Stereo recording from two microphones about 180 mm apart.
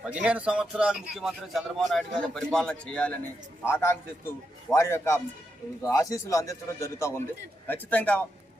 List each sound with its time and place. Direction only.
0.0 s a man's voice: 5° right (ahead or behind)